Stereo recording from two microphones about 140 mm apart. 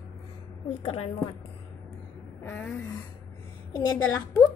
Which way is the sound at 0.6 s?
40° left (ahead or behind).